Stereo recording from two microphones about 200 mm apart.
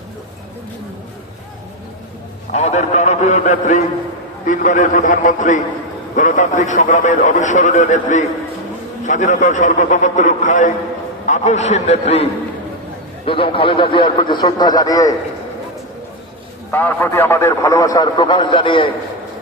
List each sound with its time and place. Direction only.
2.5 s a man's voice: 35° left (ahead or behind); by 15.1 s 20° left (ahead or behind)
16.7 s a man's voice: 10° left (ahead or behind)